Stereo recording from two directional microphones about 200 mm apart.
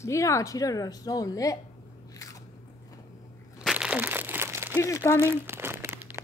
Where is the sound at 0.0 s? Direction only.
15° left (ahead or behind).